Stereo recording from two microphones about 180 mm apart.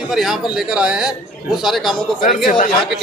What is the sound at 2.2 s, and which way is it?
Speech, 50° left (ahead or behind).